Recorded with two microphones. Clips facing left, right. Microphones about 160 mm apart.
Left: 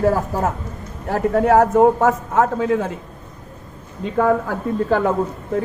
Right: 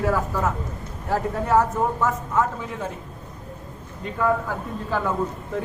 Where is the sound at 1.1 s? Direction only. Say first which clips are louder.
Left 6 dB; 70° left (ahead or behind); by 2.9 s 90° left.